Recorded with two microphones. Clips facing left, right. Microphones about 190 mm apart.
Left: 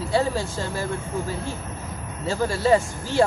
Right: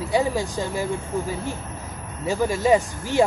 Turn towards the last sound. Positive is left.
turn(degrees=-15)  # may be behind; listen again after turning